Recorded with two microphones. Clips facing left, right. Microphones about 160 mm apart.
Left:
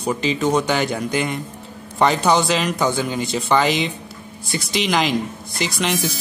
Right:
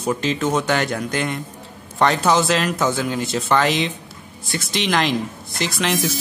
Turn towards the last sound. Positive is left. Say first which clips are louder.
# right 1 dB
turn(degrees=0)  # may be behind; listen again after turning